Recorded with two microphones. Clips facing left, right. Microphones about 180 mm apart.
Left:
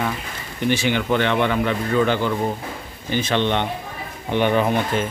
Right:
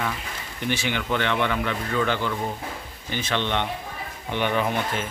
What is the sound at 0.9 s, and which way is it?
Speech, 35° left (ahead or behind).